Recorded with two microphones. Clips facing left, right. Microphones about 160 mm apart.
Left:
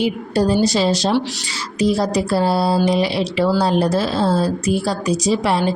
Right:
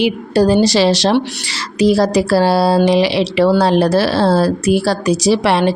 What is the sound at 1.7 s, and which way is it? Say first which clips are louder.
Speech: right 5 dB; 90° right.